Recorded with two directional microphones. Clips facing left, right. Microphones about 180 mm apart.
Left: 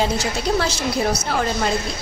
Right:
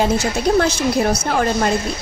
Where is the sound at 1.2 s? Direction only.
50° right (ahead or behind).